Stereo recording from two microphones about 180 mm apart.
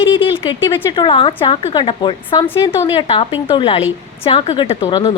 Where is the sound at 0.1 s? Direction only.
30° left (ahead or behind).